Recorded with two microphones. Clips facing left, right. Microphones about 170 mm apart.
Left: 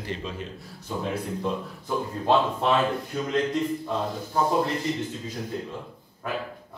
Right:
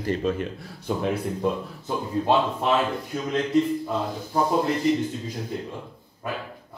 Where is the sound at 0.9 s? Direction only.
70° right (ahead or behind).